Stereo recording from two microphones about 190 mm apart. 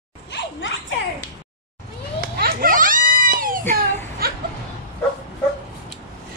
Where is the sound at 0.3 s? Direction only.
70° left (ahead or behind).